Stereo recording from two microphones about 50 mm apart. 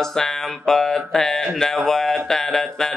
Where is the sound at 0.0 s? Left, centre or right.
Centre.